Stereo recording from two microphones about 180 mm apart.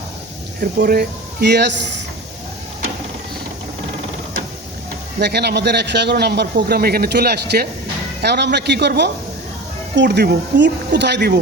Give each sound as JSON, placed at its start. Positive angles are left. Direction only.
{"t": 0.6, "sound": "speech", "side_deg": -55}
{"t": 5.2, "sound": "a man's voice", "side_deg": -65}